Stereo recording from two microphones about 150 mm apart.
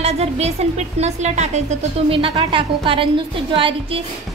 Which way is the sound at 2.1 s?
35° right (ahead or behind).